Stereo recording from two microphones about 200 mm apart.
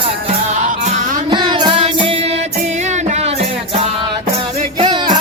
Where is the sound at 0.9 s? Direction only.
40° right (ahead or behind).